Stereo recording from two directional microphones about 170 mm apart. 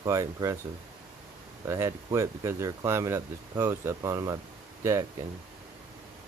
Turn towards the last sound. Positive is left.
turn(degrees=-15)  # may be behind; listen again after turning